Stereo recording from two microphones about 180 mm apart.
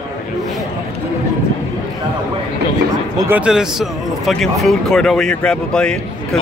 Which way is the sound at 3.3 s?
5° right (ahead or behind).